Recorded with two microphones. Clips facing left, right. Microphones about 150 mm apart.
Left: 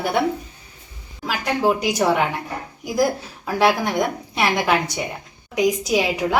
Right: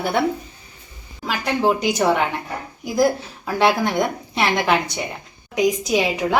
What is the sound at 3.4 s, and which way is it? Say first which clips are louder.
A woman's voice: even; 10° left (ahead or behind).